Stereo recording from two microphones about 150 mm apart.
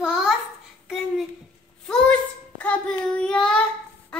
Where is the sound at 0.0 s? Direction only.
5° right (ahead or behind).